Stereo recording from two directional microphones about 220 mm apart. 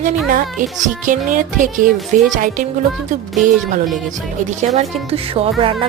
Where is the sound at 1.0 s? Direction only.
35° right (ahead or behind).